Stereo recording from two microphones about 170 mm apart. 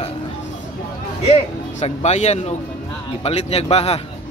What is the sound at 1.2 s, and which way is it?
A man's voice, 35° left (ahead or behind).